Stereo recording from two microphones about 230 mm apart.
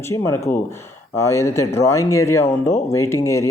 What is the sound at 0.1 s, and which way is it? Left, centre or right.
Speech, centre.